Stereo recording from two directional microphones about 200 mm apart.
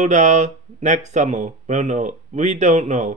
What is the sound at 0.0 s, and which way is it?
Speech, 35° right (ahead or behind).